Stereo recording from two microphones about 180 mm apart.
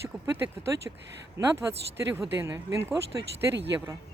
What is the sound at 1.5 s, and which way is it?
Speech, 15° right (ahead or behind).